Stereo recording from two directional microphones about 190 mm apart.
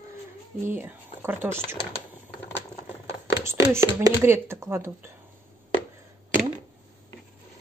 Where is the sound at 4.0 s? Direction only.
15° right (ahead or behind).